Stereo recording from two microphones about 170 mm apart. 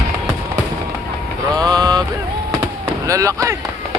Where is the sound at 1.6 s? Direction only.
25° right (ahead or behind).